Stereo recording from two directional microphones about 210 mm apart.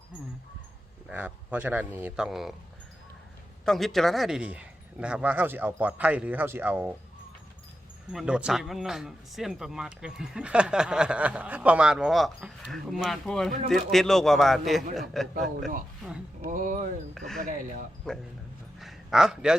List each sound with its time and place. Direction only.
1.0 s speech: 5° right (ahead or behind)
3.7 s speech: centre (ahead or behind)
8.1 s speech: 5° right (ahead or behind)
16.4 s speech: 40° right (ahead or behind)
17.2 s speech: centre (ahead or behind)
18.8 s a sound: centre (ahead or behind)